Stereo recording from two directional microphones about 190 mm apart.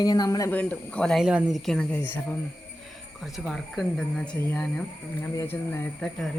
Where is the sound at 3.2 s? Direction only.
Centre (ahead or behind).